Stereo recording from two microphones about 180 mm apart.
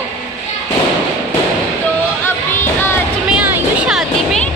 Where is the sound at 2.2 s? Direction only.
10° left (ahead or behind).